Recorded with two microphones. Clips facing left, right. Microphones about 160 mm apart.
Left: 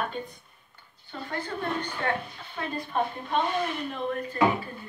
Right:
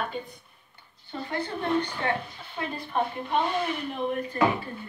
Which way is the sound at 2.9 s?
10° right (ahead or behind).